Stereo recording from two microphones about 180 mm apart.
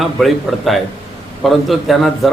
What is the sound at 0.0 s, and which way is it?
A man's voice, centre (ahead or behind).